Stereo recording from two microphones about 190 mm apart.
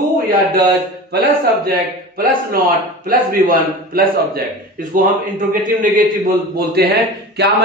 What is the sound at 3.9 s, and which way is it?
Speech, 50° right (ahead or behind).